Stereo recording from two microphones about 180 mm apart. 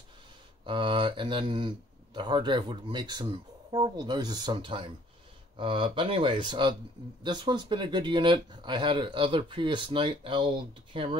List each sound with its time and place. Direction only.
0.7 s speech: 25° right (ahead or behind)